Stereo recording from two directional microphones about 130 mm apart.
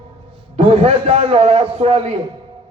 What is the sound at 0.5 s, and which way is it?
A man's voice, 50° right (ahead or behind).